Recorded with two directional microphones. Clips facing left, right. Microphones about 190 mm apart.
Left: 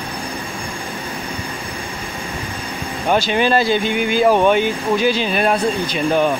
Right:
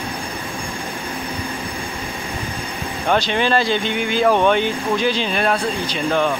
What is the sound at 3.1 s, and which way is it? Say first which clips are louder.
Speech: left 2 dB; 10° left (ahead or behind).